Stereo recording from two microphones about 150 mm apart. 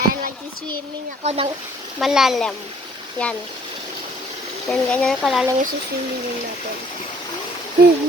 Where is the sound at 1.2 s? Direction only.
45° right (ahead or behind).